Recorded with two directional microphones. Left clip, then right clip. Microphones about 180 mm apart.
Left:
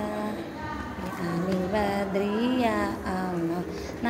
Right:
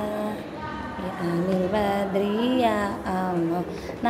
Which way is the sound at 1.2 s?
25° right (ahead or behind).